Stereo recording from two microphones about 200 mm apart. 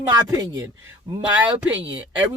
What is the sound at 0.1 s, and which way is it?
Speech, 15° right (ahead or behind).